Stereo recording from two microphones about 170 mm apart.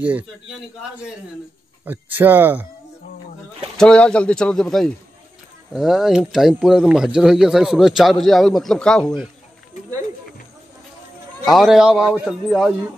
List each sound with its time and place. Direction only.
0.0 s speech: 10° right (ahead or behind)
1.9 s speech: 10° right (ahead or behind)
3.7 s speech: 5° left (ahead or behind)
11.4 s speech: centre (ahead or behind)